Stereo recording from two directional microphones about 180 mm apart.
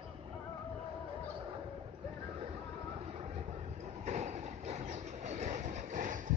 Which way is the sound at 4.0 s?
40° right (ahead or behind).